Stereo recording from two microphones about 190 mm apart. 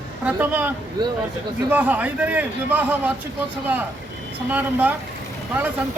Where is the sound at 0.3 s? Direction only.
10° right (ahead or behind).